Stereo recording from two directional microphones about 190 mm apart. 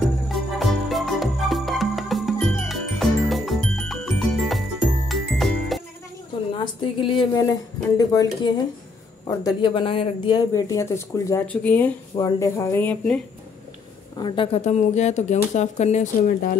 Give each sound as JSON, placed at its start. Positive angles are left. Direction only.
{"t": 0.3, "sound": "music", "side_deg": 0}
{"t": 6.6, "sound": "speech", "side_deg": 25}
{"t": 14.2, "sound": "speech", "side_deg": 25}